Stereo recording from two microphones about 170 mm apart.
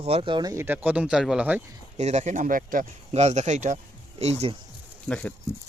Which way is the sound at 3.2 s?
40° right (ahead or behind).